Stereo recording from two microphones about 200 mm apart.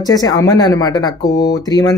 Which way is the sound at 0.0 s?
20° left (ahead or behind).